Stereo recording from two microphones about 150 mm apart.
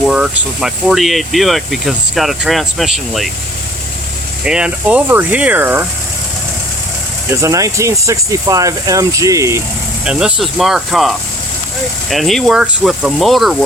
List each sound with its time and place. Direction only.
0.0 s speech: 5° right (ahead or behind)
4.4 s speech: 5° right (ahead or behind)
7.3 s speech: 20° right (ahead or behind)
10.0 s speech: 5° right (ahead or behind)